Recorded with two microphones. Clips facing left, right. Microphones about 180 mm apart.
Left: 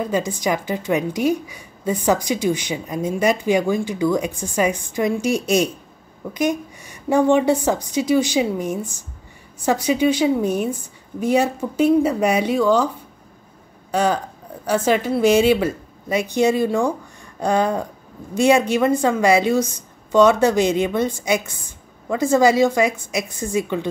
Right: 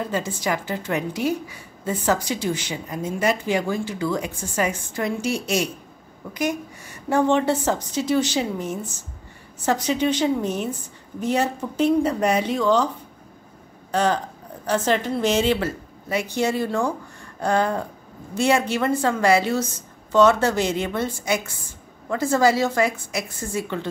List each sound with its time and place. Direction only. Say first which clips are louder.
0.1 s a woman's voice: left 4 dB; 15° left (ahead or behind)
13.9 s a woman's voice: left 2 dB; 10° left (ahead or behind)